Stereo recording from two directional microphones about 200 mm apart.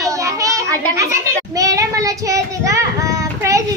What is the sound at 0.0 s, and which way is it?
Child singing, 15° right (ahead or behind).